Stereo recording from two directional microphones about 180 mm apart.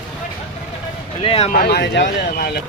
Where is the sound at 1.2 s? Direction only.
35° left (ahead or behind).